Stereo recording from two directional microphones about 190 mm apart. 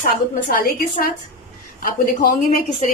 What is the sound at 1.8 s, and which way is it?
Speech, 50° left (ahead or behind).